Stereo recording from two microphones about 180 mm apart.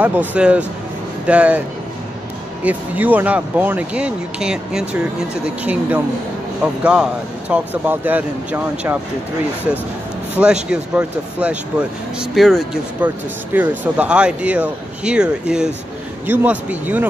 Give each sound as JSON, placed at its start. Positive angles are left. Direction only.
{"t": 0.0, "sound": "speech", "side_deg": -10}
{"t": 2.6, "sound": "speech", "side_deg": -10}
{"t": 10.3, "sound": "speech", "side_deg": -5}